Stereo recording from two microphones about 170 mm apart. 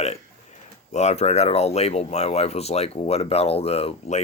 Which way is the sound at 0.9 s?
40° left (ahead or behind).